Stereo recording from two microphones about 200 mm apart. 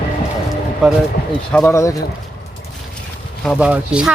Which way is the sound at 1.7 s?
15° left (ahead or behind).